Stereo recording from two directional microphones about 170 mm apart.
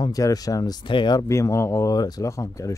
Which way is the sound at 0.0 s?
20° left (ahead or behind).